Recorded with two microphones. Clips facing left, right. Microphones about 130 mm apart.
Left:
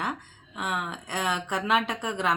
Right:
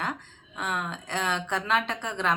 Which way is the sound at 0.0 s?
10° left (ahead or behind).